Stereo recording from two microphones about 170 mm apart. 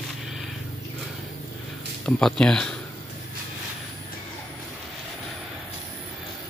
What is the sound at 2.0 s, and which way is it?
Speech, 5° left (ahead or behind).